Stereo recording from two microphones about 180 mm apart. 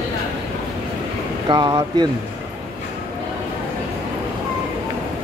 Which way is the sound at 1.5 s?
25° right (ahead or behind).